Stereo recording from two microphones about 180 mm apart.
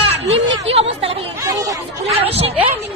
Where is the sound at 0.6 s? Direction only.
35° right (ahead or behind).